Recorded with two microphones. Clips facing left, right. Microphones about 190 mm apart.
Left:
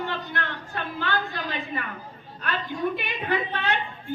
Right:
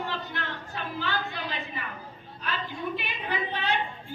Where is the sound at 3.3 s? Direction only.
60° left (ahead or behind).